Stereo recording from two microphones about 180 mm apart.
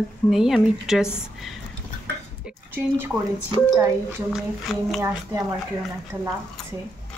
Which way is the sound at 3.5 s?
20° right (ahead or behind).